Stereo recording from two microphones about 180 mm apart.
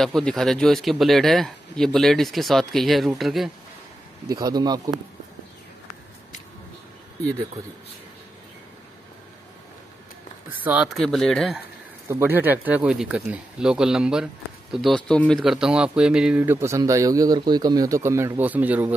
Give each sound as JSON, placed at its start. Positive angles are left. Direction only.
{"t": 0.0, "sound": "speech", "side_deg": 5}
{"t": 4.3, "sound": "speech", "side_deg": -20}
{"t": 10.5, "sound": "speech", "side_deg": -10}
{"t": 12.1, "sound": "speech", "side_deg": -10}